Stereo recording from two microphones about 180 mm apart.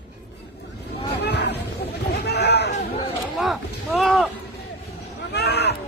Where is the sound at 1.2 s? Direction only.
70° left (ahead or behind).